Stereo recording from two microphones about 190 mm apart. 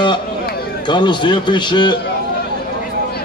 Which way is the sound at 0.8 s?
25° left (ahead or behind).